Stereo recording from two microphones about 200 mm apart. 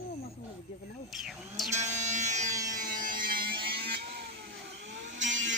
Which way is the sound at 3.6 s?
50° right (ahead or behind).